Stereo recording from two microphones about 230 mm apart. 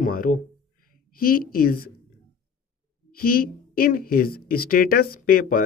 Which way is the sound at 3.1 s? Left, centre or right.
Left.